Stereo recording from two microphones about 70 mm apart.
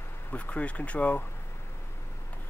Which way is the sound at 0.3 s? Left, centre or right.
Left.